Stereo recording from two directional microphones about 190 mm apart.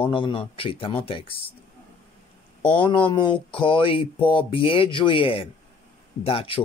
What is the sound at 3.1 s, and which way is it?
Speech, 25° left (ahead or behind).